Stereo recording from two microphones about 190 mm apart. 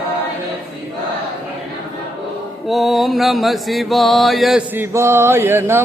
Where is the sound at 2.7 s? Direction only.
Centre (ahead or behind).